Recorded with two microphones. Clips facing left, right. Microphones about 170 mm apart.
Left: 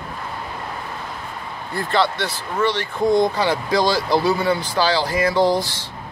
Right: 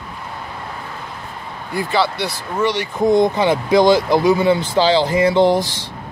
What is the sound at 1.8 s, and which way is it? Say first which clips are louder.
Speech: right 2 dB; 5° right (ahead or behind).